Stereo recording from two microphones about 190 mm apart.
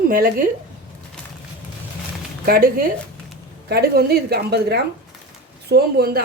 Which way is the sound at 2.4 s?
50° right (ahead or behind).